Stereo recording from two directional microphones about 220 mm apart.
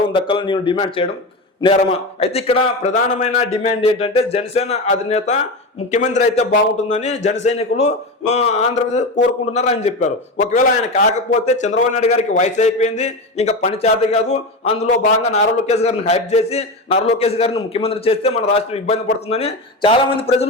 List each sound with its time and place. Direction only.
0.1 s a man's voice: 25° left (ahead or behind)